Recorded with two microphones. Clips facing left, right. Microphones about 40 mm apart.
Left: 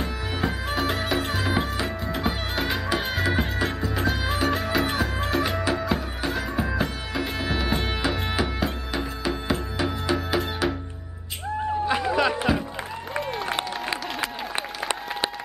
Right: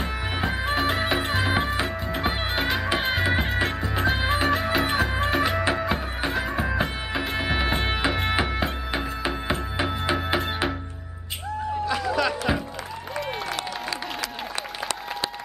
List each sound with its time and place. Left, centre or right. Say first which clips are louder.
0.0 s music: even; centre
8.3 s music: right 1 dB; right
11.8 s a sound: left 1 dB; left